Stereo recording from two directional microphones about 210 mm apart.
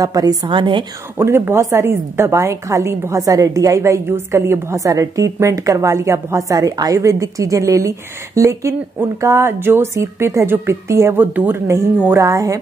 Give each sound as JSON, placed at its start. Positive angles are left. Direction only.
{"t": 0.0, "sound": "a woman's voice", "side_deg": -15}
{"t": 1.1, "sound": "a woman's voice", "side_deg": -10}